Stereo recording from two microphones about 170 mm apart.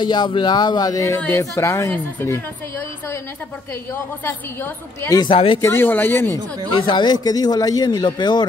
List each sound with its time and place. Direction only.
0.0 s a man's voice: 25° left (ahead or behind)
5.1 s a man's voice: 25° left (ahead or behind)
5.6 s a woman's voice: 15° left (ahead or behind)
6.9 s a man's voice: 25° left (ahead or behind)